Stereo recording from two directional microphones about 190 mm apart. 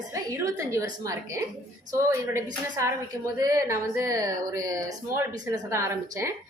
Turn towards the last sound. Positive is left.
turn(degrees=-15)  # may be behind; listen again after turning